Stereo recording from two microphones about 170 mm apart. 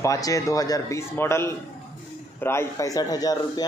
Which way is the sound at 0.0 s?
20° left (ahead or behind).